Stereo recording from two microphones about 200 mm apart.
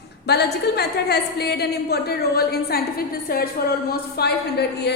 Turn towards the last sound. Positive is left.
turn(degrees=55)  # may be behind; listen again after turning